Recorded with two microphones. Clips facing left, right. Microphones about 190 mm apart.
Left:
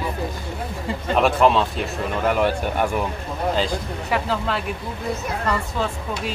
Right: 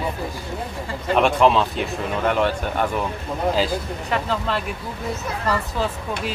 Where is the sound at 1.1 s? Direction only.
Centre (ahead or behind).